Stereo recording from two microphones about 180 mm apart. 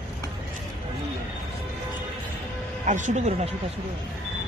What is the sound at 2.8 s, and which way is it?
Speech, 40° right (ahead or behind).